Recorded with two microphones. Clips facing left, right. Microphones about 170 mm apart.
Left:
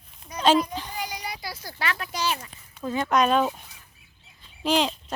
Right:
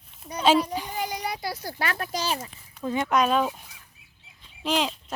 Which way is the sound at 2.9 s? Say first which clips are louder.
Right 1 dB; 15° right (ahead or behind).